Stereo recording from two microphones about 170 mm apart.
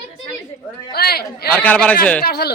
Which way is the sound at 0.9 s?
65° left (ahead or behind).